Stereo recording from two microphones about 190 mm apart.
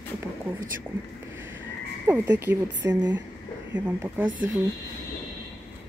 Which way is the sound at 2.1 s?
10° right (ahead or behind).